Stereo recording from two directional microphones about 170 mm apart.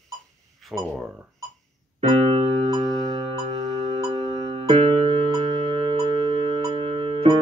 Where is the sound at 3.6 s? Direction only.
40° right (ahead or behind).